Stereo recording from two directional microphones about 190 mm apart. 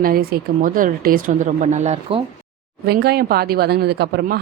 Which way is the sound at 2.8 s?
55° right (ahead or behind).